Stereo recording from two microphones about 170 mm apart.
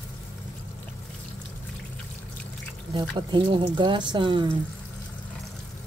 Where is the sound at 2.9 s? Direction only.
30° right (ahead or behind).